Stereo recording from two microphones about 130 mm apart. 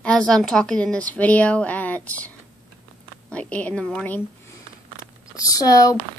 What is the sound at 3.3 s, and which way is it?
Speech, 10° left (ahead or behind).